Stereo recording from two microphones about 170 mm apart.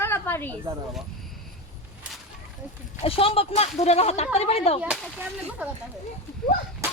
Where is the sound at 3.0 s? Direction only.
35° left (ahead or behind).